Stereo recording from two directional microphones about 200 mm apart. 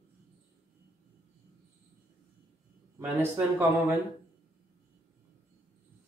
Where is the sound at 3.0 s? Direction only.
10° right (ahead or behind).